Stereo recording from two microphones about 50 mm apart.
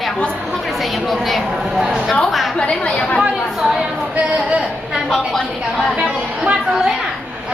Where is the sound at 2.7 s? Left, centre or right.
Centre.